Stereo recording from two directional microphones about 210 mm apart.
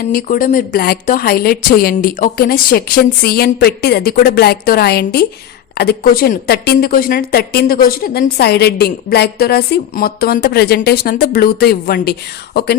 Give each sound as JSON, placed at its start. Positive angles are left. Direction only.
{"t": 0.0, "sound": "a woman's voice", "side_deg": 40}